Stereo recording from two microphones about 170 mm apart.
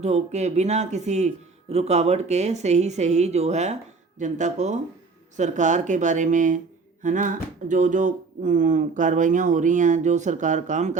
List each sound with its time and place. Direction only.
0.0 s speech: 40° right (ahead or behind)